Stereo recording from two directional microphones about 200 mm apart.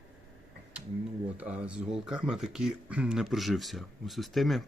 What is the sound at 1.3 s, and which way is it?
Speech, 5° right (ahead or behind).